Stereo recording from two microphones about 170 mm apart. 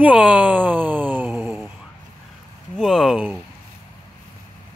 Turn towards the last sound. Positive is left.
turn(degrees=0)  # may be behind; listen again after turning